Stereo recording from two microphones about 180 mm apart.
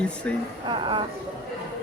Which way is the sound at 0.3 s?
5° left (ahead or behind).